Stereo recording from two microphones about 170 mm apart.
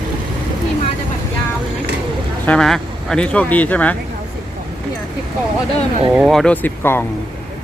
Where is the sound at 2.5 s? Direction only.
5° left (ahead or behind).